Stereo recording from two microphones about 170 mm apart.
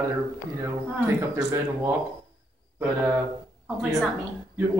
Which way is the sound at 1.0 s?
15° right (ahead or behind).